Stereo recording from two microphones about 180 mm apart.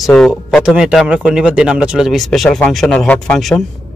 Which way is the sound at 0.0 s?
Centre (ahead or behind).